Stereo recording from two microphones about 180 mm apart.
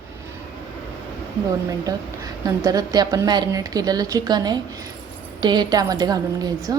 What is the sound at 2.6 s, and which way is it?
A woman's voice, 20° right (ahead or behind).